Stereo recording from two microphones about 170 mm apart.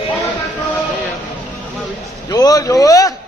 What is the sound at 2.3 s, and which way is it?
Speech, 20° left (ahead or behind).